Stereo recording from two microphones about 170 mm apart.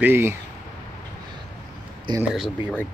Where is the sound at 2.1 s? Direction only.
25° right (ahead or behind).